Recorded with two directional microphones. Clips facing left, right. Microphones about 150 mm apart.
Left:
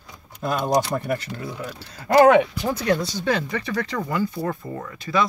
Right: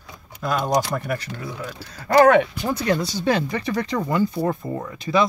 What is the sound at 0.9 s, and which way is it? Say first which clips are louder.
Speech: left 1 dB; 25° left (ahead or behind).